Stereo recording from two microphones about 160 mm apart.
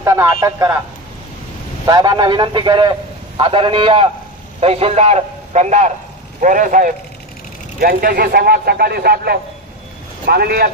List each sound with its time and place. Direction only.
0.0 s a man's voice: 20° right (ahead or behind)
1.9 s a man's voice: 25° right (ahead or behind); by 6.9 s 55° right (ahead or behind)
7.8 s speech: 70° right (ahead or behind)